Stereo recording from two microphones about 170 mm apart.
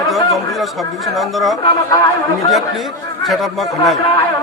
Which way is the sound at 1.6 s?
20° left (ahead or behind).